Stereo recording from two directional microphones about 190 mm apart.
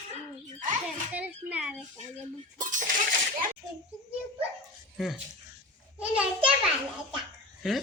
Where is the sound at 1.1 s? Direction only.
5° right (ahead or behind).